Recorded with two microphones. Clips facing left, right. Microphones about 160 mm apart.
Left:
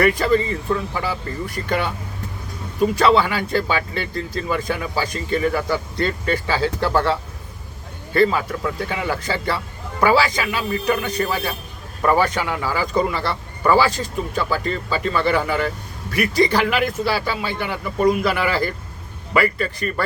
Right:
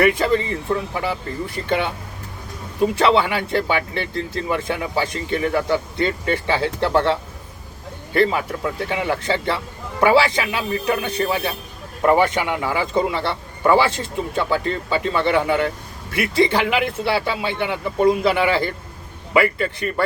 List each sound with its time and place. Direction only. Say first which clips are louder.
0.0 s speech: even; 25° right (ahead or behind)
2.9 s speech: left 1 dB; 25° right (ahead or behind)